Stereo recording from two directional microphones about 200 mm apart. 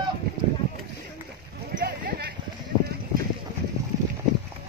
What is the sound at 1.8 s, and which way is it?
Clip-clop, 50° right (ahead or behind).